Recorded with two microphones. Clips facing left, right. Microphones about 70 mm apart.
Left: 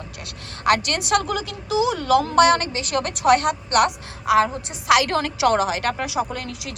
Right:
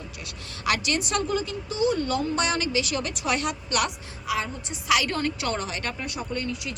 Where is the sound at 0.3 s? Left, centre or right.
Left.